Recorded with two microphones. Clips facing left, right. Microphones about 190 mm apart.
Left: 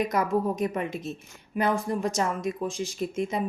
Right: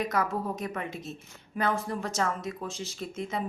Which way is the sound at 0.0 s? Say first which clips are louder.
Left 4 dB; 20° left (ahead or behind).